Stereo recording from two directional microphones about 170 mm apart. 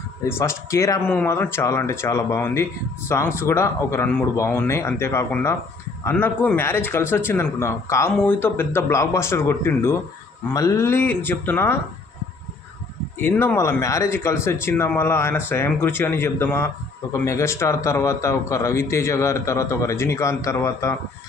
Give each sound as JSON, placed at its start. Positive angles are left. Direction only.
{"t": 0.3, "sound": "a man's voice", "side_deg": 15}
{"t": 13.1, "sound": "a man's voice", "side_deg": 10}